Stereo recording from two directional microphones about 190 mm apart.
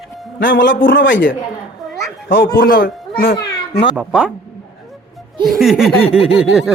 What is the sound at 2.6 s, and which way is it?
Speech, 50° left (ahead or behind).